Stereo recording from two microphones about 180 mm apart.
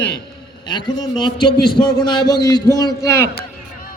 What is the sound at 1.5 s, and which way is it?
Speech, 60° left (ahead or behind).